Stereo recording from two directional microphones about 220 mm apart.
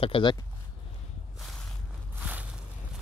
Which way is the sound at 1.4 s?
Centre (ahead or behind).